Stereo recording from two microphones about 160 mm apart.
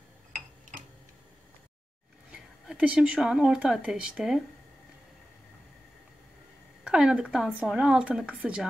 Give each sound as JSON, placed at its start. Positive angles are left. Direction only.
{"t": 2.3, "sound": "speech", "side_deg": -5}
{"t": 6.8, "sound": "speech", "side_deg": -5}